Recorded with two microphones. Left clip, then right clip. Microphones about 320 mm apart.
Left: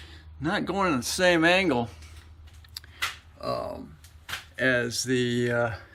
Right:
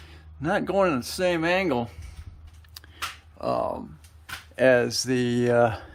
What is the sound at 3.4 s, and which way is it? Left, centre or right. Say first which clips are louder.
Speech: right 4 dB; centre.